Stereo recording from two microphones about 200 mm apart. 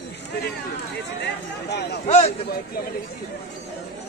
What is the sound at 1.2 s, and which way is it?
Speech, 55° left (ahead or behind).